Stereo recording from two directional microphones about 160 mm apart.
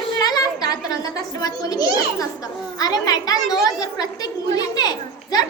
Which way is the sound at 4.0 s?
25° left (ahead or behind).